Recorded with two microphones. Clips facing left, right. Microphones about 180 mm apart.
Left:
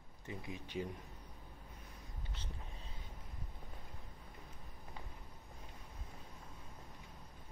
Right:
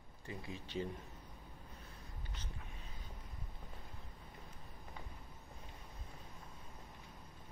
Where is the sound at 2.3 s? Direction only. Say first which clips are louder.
Left 2 dB; 30° left (ahead or behind).